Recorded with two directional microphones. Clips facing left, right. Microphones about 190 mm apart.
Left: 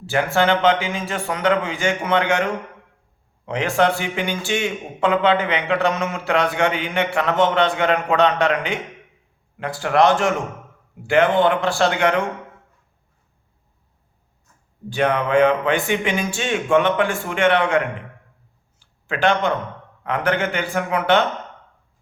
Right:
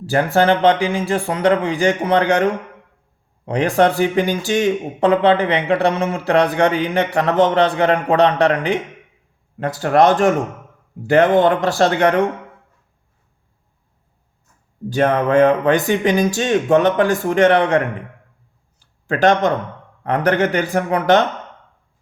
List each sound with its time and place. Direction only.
0.0 s speech: 40° right (ahead or behind)
14.8 s speech: 40° right (ahead or behind)
18.8 s a sound: 40° right (ahead or behind)
20.1 s speech: 40° right (ahead or behind)